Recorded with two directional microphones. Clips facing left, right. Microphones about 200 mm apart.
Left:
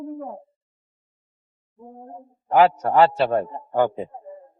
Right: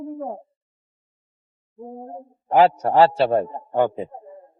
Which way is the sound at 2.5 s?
30° right (ahead or behind).